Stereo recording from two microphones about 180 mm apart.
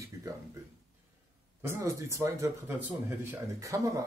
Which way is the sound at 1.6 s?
15° right (ahead or behind).